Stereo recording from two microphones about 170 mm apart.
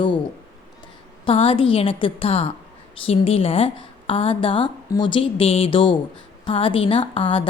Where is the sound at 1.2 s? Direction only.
35° left (ahead or behind).